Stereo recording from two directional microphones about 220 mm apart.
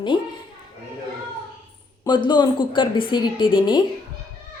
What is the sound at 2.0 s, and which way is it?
A woman's voice, 20° left (ahead or behind).